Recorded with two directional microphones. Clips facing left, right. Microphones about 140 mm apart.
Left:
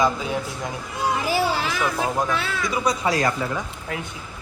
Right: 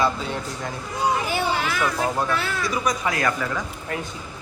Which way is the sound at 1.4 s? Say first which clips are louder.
Left 1 dB; 5° left (ahead or behind).